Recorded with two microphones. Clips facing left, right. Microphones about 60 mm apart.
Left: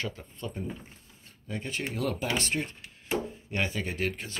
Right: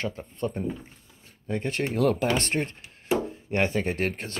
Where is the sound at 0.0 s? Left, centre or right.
Right.